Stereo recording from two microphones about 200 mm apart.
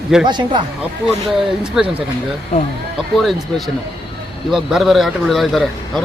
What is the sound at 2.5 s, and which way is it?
Speech, 35° left (ahead or behind).